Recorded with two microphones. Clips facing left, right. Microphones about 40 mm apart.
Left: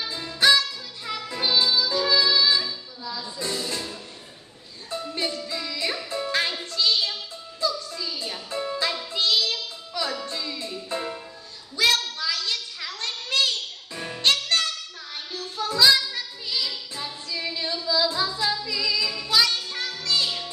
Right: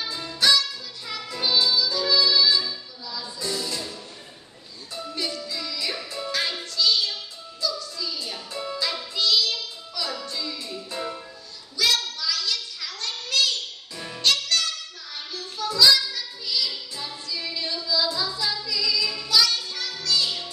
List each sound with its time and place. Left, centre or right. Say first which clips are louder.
0.3 s music: left 2 dB; left
3.3 s music: even; left
5.1 s music: even; left
8.9 s child singing: right 4 dB; left
10.6 s music: left 3 dB; left
11.7 s a sound: left 2 dB; left
14.2 s music: left 1 dB; left